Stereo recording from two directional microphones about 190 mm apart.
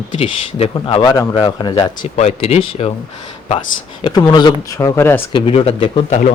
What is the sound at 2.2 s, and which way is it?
Speech, 35° left (ahead or behind).